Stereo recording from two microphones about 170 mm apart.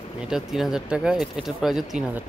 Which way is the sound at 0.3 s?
Centre (ahead or behind).